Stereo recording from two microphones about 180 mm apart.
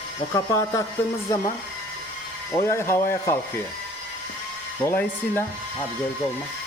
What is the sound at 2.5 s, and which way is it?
Speech, 15° left (ahead or behind).